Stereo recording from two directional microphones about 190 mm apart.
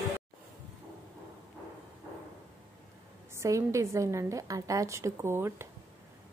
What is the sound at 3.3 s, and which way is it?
A woman's voice, 15° right (ahead or behind).